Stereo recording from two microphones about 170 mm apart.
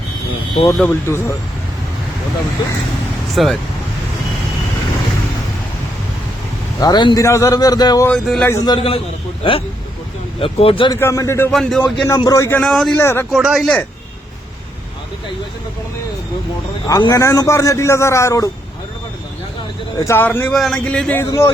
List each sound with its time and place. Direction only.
0.8 s a man's voice: 15° left (ahead or behind)
3.3 s speech: centre (ahead or behind)
6.7 s speech: 25° left (ahead or behind)
8.0 s speech: 5° left (ahead or behind)
8.4 s speech: 20° left (ahead or behind)
11.0 s a man's voice: 20° left (ahead or behind)
11.5 s speech: centre (ahead or behind)
11.8 s a man's voice: 20° left (ahead or behind); by 13.0 s 5° left (ahead or behind)
13.0 s a man's voice: 15° left (ahead or behind)
13.3 s speech: centre (ahead or behind)
16.8 s a man's voice: 20° left (ahead or behind)
20.0 s a man's voice: 15° left (ahead or behind)